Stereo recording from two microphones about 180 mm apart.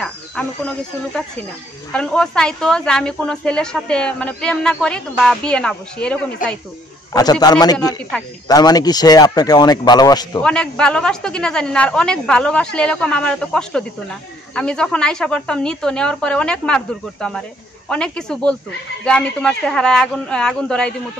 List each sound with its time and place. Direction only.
0.0 s speech: 5° left (ahead or behind)
7.2 s a man's voice: 20° left (ahead or behind)
8.1 s speech: 5° left (ahead or behind)
8.5 s a man's voice: 20° left (ahead or behind)
10.4 s speech: 5° left (ahead or behind)